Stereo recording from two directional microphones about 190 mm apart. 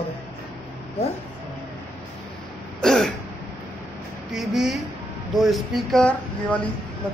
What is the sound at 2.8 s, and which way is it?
Throat clearing, centre (ahead or behind).